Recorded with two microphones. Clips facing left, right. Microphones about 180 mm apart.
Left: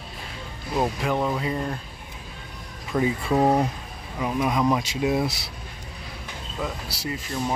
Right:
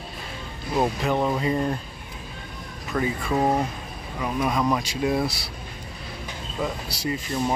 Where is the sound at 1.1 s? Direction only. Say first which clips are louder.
Right 2 dB; 10° right (ahead or behind).